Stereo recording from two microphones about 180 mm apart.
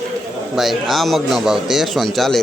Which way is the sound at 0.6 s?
Centre (ahead or behind).